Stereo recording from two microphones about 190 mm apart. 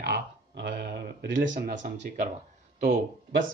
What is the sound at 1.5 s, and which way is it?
Speech, 50° right (ahead or behind).